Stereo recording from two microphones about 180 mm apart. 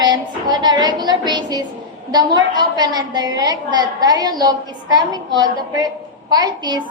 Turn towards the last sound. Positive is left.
turn(degrees=-25)  # may be behind; listen again after turning